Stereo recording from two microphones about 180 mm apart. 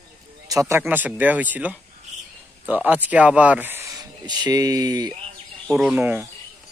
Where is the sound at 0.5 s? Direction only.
15° right (ahead or behind).